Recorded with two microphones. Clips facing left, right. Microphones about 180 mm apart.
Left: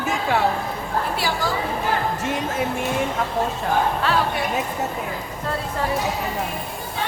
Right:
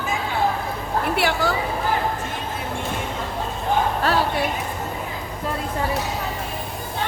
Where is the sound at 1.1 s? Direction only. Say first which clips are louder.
Right 3 dB; 65° right (ahead or behind).